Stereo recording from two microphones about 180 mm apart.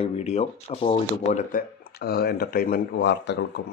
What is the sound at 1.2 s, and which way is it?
Speech, 40° left (ahead or behind).